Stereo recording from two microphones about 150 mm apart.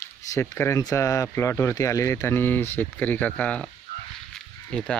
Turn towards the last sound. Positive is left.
turn(degrees=5)  # may be behind; listen again after turning